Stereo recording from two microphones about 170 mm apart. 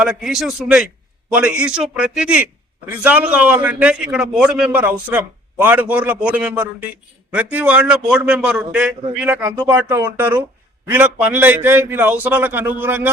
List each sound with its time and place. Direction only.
0.0 s a man's voice: 5° right (ahead or behind)